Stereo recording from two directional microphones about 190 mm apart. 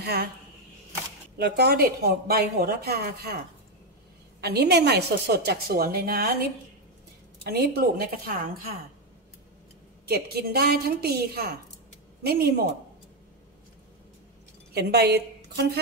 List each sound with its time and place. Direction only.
0.0 s speech: 55° right (ahead or behind)
1.4 s speech: 55° right (ahead or behind)
4.4 s speech: 55° right (ahead or behind)
7.4 s speech: 55° right (ahead or behind)
10.0 s speech: 55° right (ahead or behind)
14.7 s a woman's voice: 60° right (ahead or behind)